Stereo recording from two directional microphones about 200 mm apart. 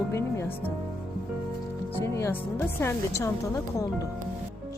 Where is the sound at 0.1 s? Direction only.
15° left (ahead or behind).